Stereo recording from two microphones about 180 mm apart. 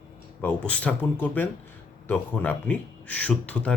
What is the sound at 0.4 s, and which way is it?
Speech, 5° left (ahead or behind).